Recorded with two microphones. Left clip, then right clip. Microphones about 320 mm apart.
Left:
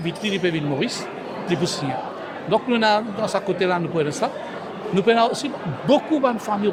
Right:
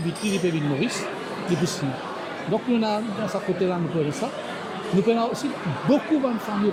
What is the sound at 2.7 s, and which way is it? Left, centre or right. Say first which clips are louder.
Speech: left 6 dB; left.